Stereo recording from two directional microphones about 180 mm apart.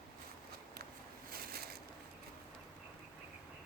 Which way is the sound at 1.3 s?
55° right (ahead or behind).